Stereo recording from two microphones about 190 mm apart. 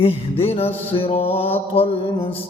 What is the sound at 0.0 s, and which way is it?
Mantra, 30° left (ahead or behind).